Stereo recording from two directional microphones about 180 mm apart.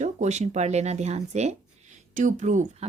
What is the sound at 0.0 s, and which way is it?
Speech, 40° right (ahead or behind).